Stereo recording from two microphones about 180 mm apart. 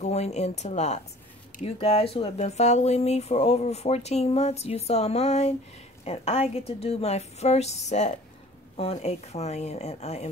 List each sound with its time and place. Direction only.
0.0 s speech: 40° left (ahead or behind)